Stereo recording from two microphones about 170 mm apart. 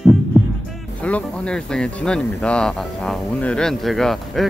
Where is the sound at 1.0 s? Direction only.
5° left (ahead or behind).